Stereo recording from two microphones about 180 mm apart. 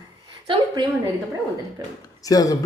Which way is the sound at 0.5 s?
25° right (ahead or behind).